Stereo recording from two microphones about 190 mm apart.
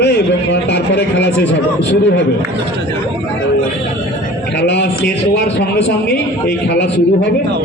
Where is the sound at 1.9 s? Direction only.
65° left (ahead or behind).